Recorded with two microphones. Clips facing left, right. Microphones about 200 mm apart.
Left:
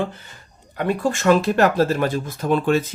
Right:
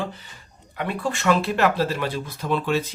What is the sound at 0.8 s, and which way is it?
Speech, 45° left (ahead or behind).